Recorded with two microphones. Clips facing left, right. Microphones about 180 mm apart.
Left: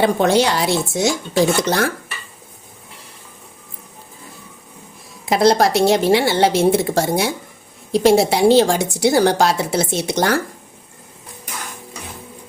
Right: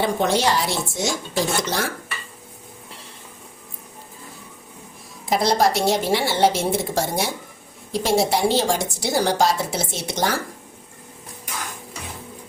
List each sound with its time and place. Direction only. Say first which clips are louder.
0.0 s a woman's voice: left 5 dB; 70° left (ahead or behind)
5.2 s a woman's voice: left 5 dB; 65° left (ahead or behind)